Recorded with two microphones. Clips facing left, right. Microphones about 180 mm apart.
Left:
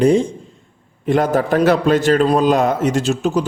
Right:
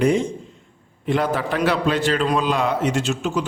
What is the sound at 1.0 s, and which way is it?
A man's voice, 45° left (ahead or behind).